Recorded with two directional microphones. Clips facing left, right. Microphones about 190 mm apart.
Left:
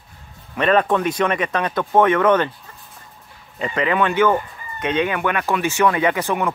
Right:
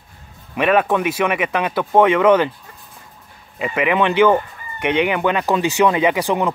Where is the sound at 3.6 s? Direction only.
10° right (ahead or behind).